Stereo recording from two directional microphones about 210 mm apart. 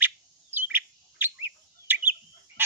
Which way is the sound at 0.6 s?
10° right (ahead or behind).